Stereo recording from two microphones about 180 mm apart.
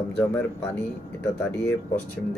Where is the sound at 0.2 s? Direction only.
10° left (ahead or behind).